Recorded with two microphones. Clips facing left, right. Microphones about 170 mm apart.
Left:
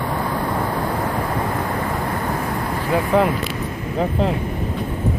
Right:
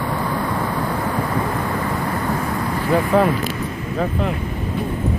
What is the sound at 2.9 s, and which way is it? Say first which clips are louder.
Speech: right 1 dB; 15° left (ahead or behind).